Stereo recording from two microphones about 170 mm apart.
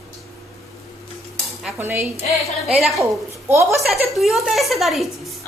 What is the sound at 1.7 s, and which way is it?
Speech, 15° right (ahead or behind).